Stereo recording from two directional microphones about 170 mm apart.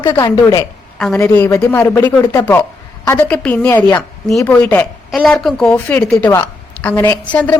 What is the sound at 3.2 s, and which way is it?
A woman's voice, 5° left (ahead or behind).